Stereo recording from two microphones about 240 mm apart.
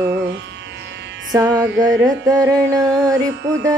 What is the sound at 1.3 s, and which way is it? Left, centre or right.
Music, centre.